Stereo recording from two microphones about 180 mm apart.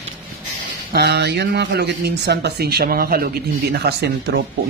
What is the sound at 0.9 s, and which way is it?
Speech, 65° right (ahead or behind).